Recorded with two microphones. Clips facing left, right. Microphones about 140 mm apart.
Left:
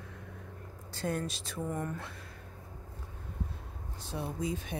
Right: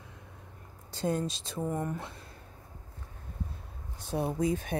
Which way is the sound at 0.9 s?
20° right (ahead or behind).